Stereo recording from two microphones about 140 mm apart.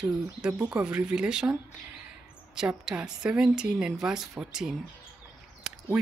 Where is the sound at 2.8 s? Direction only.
5° right (ahead or behind).